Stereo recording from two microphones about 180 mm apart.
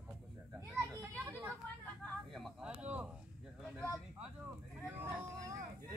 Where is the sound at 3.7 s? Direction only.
15° left (ahead or behind).